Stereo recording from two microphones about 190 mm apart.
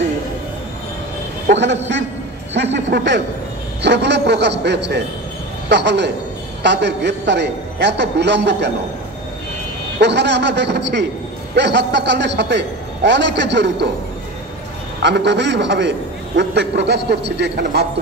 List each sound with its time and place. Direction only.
1.5 s a man's voice: 70° right (ahead or behind)
2.5 s a sound: 65° right (ahead or behind)
3.8 s a man's voice: 65° right (ahead or behind)
9.9 s a man's voice: 65° right (ahead or behind)
15.0 s a man's voice: 65° right (ahead or behind)